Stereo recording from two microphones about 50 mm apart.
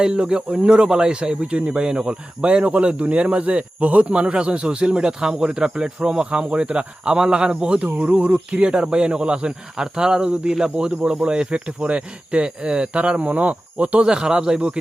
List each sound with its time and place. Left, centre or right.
0.0 s speech: centre